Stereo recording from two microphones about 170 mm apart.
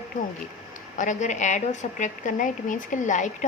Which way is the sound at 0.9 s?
45° left (ahead or behind).